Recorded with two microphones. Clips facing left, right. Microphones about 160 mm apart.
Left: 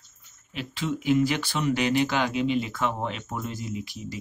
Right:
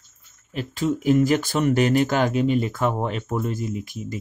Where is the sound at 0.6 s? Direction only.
45° right (ahead or behind).